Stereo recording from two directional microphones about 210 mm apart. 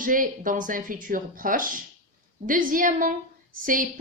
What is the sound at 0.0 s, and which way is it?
A woman's voice, 40° right (ahead or behind).